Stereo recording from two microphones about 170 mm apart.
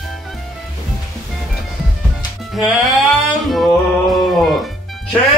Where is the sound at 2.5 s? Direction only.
Centre (ahead or behind).